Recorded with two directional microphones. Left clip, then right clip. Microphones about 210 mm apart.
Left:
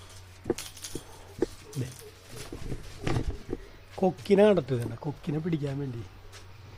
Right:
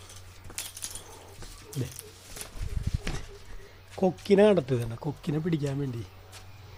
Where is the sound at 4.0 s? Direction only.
Centre (ahead or behind).